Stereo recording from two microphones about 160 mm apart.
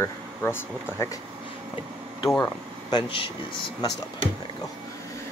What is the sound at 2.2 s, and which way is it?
Speech, 10° left (ahead or behind).